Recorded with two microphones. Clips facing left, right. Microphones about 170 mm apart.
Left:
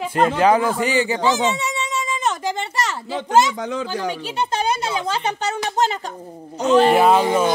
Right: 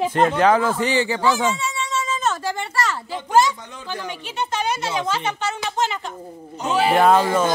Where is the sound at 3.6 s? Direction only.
90° left.